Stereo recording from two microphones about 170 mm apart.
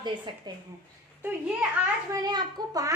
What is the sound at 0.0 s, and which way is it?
Speech, 25° right (ahead or behind).